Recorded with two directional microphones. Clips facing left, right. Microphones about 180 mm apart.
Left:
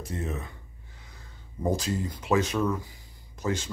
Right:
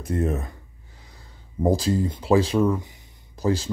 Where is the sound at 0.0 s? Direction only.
55° right (ahead or behind).